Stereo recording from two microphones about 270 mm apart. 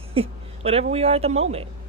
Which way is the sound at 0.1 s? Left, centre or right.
Right.